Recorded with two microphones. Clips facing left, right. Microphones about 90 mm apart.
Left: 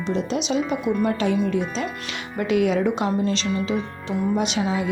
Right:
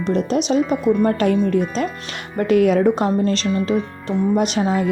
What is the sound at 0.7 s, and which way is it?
Speech, 5° left (ahead or behind).